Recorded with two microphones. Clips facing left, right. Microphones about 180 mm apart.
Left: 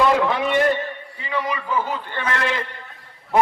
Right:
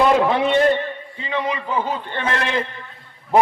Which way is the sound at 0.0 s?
20° right (ahead or behind).